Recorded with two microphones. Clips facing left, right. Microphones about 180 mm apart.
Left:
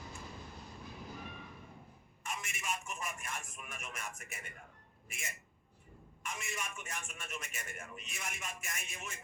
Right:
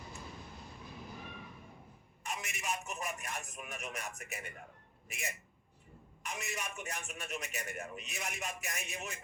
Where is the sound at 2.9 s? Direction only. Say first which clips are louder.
Right 2 dB; 40° right (ahead or behind).